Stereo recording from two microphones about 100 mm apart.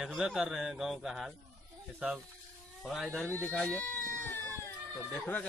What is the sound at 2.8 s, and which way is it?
Speech, centre (ahead or behind).